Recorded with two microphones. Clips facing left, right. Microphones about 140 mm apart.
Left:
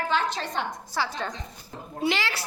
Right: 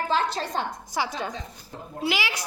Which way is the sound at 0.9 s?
15° right (ahead or behind).